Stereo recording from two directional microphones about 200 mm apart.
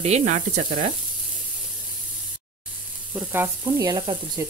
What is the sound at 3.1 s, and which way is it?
Frying, 5° right (ahead or behind).